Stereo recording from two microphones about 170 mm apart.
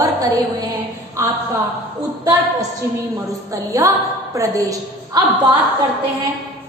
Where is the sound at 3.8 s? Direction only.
20° right (ahead or behind).